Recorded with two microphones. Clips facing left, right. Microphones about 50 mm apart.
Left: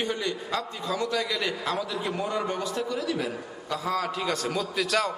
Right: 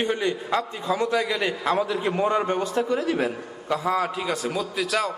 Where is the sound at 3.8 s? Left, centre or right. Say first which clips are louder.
Right 2 dB; centre.